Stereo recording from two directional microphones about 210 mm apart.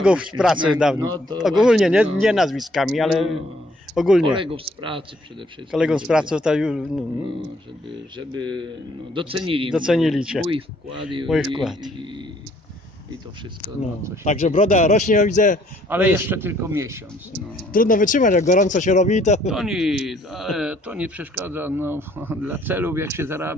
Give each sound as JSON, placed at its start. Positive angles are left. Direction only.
{"t": 0.0, "sound": "a man's voice", "side_deg": -5}
{"t": 0.9, "sound": "a man's voice", "side_deg": -15}
{"t": 1.6, "sound": "a man's voice", "side_deg": -5}
{"t": 4.3, "sound": "speech", "side_deg": -25}
{"t": 5.7, "sound": "a man's voice", "side_deg": -5}
{"t": 8.2, "sound": "speech", "side_deg": -20}
{"t": 9.8, "sound": "a man's voice", "side_deg": 0}
{"t": 10.4, "sound": "speech", "side_deg": -25}
{"t": 11.2, "sound": "a man's voice", "side_deg": 0}
{"t": 11.8, "sound": "speech", "side_deg": -20}
{"t": 14.2, "sound": "speech", "side_deg": 35}
{"t": 15.9, "sound": "a man's voice", "side_deg": -10}
{"t": 17.7, "sound": "speech", "side_deg": 40}
{"t": 19.5, "sound": "a man's voice", "side_deg": 0}